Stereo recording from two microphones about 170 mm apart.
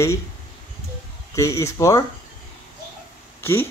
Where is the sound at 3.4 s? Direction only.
15° left (ahead or behind).